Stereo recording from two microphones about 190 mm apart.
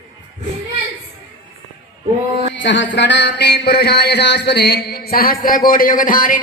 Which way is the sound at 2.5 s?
70° left (ahead or behind).